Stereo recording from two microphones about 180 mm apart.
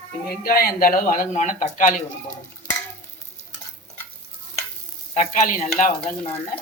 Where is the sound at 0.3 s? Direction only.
55° left (ahead or behind).